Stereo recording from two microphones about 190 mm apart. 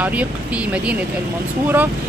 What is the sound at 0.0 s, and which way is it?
Speech, 5° right (ahead or behind).